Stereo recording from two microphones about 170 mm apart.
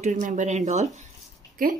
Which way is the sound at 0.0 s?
45° right (ahead or behind).